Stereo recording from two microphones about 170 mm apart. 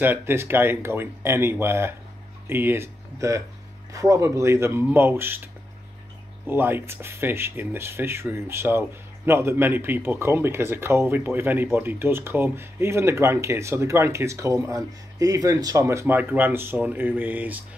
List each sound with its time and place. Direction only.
0.0 s speech: 15° right (ahead or behind)
6.4 s speech: 10° right (ahead or behind)